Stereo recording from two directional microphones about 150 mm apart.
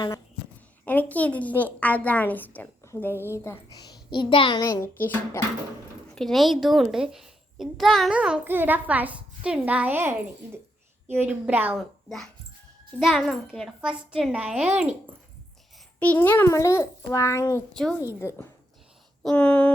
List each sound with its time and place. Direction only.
0.9 s a woman's voice: 10° left (ahead or behind); by 4.6 s 35° left (ahead or behind)
4.6 s a woman's voice: 20° left (ahead or behind)
6.1 s a child's voice: centre (ahead or behind)
11.8 s a child's voice: centre (ahead or behind)
16.0 s a child's voice: 10° left (ahead or behind)